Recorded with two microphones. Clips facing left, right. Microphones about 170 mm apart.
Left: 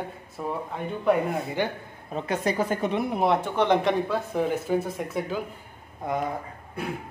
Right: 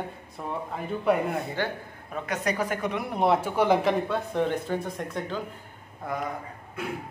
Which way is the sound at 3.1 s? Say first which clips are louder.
Right 3 dB; centre (ahead or behind).